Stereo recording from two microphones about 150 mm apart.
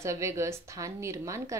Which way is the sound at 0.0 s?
20° right (ahead or behind).